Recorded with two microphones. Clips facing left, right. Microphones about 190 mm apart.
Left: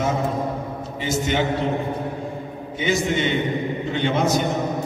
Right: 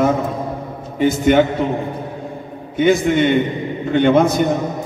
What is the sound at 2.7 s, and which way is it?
A man's voice, 55° right (ahead or behind).